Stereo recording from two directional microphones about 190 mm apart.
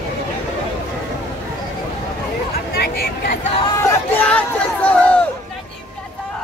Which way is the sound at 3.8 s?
10° left (ahead or behind).